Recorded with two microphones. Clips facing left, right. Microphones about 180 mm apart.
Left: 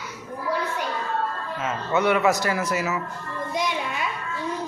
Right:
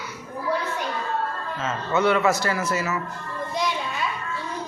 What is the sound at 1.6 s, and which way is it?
A man's voice, 15° left (ahead or behind).